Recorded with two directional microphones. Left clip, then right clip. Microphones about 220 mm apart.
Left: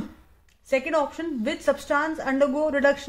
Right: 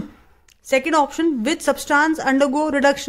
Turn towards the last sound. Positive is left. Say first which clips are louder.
# right 4 dB
turn(degrees=-45)  # may be behind; listen again after turning